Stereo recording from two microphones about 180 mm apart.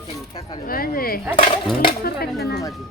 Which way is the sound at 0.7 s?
55° left (ahead or behind).